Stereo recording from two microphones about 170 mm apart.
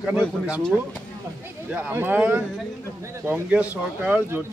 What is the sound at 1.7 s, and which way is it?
A man's voice, 10° right (ahead or behind).